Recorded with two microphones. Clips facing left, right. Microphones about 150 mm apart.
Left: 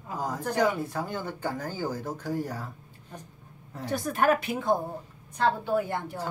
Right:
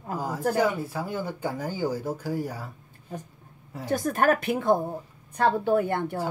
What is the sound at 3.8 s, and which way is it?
A woman's voice, 45° right (ahead or behind).